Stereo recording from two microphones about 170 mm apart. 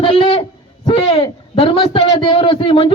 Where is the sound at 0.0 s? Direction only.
30° left (ahead or behind).